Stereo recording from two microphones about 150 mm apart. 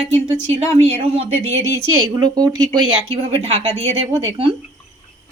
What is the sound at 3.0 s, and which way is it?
A woman's voice, 45° right (ahead or behind).